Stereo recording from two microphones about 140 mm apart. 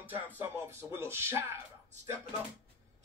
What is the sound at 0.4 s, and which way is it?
Speech, 20° right (ahead or behind).